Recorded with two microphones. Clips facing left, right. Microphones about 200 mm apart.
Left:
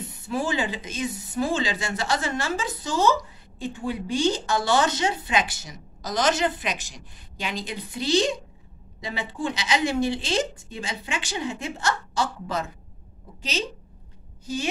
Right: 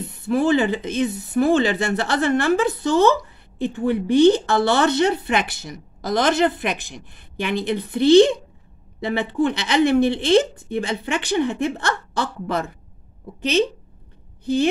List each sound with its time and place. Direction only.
0.0 s a woman's voice: 60° right (ahead or behind)